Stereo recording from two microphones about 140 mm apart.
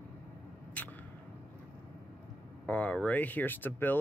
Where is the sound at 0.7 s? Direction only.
10° left (ahead or behind).